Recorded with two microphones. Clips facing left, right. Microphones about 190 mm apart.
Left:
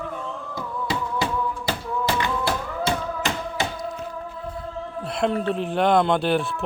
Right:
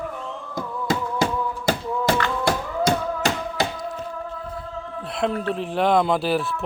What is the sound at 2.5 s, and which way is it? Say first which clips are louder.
Tap: right 3 dB; 40° right (ahead or behind).